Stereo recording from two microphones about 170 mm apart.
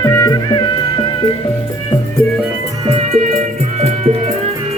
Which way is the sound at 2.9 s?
40° right (ahead or behind).